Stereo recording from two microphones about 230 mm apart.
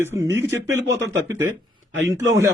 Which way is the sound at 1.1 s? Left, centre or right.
Centre.